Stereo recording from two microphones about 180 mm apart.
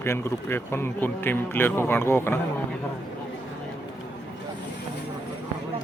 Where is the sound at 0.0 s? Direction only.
15° left (ahead or behind).